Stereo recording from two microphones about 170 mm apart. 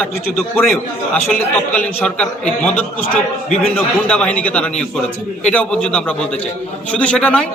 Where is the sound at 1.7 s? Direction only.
10° left (ahead or behind).